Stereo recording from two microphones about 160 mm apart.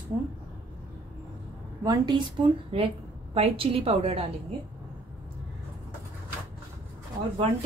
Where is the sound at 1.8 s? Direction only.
25° right (ahead or behind).